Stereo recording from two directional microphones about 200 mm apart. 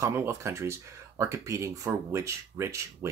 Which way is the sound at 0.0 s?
15° right (ahead or behind).